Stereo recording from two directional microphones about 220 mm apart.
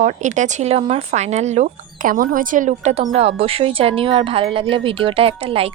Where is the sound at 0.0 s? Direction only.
35° right (ahead or behind).